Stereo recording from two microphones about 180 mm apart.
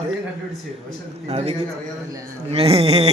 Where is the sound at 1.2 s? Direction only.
35° right (ahead or behind).